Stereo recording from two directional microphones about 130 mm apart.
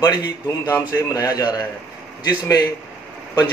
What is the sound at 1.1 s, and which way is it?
Speech, 30° left (ahead or behind).